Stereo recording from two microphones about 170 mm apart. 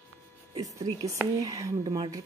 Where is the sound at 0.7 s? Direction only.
20° right (ahead or behind).